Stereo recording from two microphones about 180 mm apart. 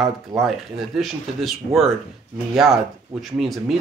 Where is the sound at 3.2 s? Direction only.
Centre (ahead or behind).